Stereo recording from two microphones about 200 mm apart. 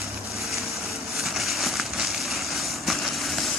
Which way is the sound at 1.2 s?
Centre (ahead or behind).